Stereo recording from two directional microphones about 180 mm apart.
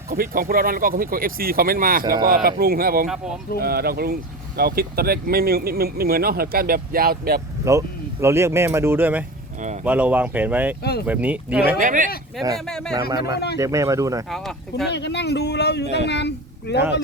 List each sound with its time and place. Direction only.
0.1 s speech: 55° right (ahead or behind)
7.6 s speech: 15° right (ahead or behind)
9.6 s a sound: 40° right (ahead or behind)
9.8 s speech: 10° right (ahead or behind)
11.8 s speech: 45° right (ahead or behind)
12.5 s speech: 5° left (ahead or behind)
13.1 s speech: 20° right (ahead or behind)
14.3 s speech: centre (ahead or behind)
14.8 s speech: 70° left (ahead or behind)